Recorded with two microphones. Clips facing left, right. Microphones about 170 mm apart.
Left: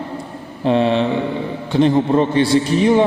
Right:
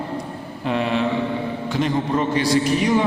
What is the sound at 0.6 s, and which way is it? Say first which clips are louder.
A man's voice: left 6 dB; 30° left (ahead or behind).